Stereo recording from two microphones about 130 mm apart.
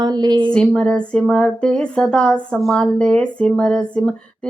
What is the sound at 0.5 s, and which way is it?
Speech, 5° left (ahead or behind).